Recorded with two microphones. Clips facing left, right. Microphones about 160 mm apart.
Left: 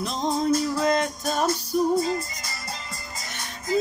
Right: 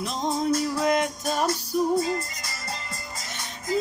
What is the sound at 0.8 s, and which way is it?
Music, 10° right (ahead or behind).